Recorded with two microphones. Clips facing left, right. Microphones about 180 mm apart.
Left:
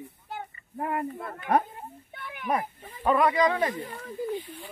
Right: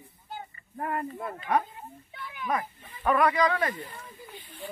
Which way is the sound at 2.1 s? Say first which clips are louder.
Right 2 dB; 60° left (ahead or behind).